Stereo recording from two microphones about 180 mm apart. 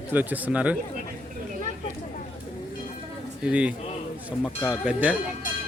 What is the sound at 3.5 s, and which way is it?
Speech, 5° right (ahead or behind).